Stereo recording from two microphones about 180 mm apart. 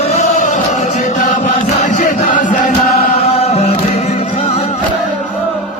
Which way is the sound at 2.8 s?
55° left (ahead or behind).